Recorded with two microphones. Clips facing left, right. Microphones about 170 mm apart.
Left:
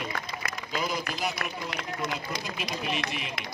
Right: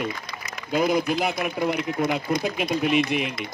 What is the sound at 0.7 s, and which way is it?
Speech, 55° right (ahead or behind).